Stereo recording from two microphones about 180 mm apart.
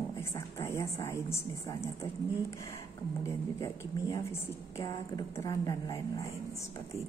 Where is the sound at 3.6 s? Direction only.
20° left (ahead or behind).